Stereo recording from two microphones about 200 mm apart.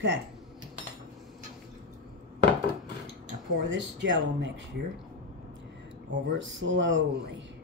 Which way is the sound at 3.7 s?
65° right (ahead or behind).